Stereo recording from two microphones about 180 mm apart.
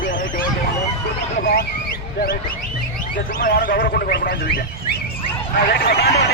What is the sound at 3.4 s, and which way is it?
A man's voice, 50° left (ahead or behind).